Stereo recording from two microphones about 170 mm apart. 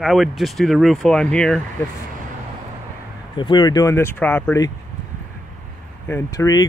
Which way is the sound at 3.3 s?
25° left (ahead or behind).